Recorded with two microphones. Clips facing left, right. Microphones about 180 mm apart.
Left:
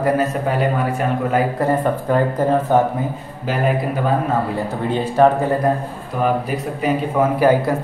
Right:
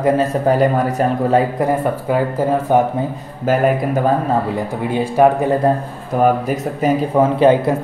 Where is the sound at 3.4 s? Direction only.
45° right (ahead or behind).